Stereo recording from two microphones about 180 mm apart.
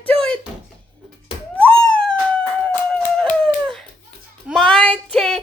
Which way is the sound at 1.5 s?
5° left (ahead or behind).